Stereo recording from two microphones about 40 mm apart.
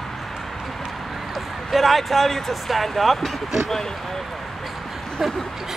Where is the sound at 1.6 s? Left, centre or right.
Centre.